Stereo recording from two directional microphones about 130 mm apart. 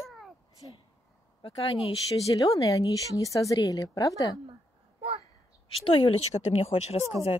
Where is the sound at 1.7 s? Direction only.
Centre (ahead or behind).